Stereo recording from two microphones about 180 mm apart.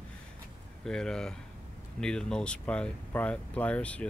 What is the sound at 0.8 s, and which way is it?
Speech, 5° left (ahead or behind).